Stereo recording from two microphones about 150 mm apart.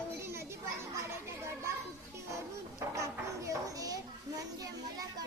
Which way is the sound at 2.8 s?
20° right (ahead or behind).